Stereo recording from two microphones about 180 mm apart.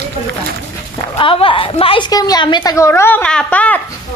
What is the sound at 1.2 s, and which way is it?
A woman's voice, 30° left (ahead or behind).